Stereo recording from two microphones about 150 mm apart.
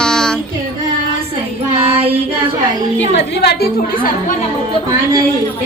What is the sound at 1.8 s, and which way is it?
Child singing, 40° right (ahead or behind).